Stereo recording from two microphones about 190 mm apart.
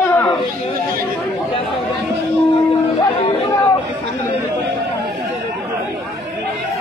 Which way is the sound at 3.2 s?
25° left (ahead or behind).